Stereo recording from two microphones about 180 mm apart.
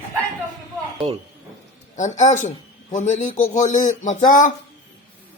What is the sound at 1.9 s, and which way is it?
A man's voice, 40° left (ahead or behind).